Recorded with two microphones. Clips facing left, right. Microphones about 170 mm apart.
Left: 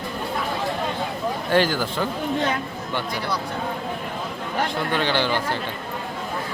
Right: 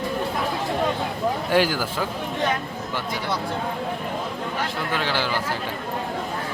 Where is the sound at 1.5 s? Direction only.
10° right (ahead or behind).